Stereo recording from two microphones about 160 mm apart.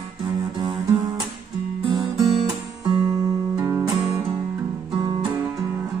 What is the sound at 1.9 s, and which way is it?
Music, 25° right (ahead or behind).